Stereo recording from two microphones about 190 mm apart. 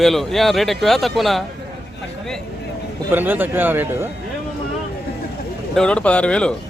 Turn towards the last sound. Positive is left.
turn(degrees=5)  # may be behind; listen again after turning